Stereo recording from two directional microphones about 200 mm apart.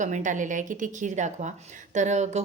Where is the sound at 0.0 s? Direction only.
40° right (ahead or behind).